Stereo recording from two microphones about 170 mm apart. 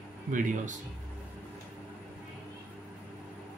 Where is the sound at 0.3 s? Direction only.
50° right (ahead or behind).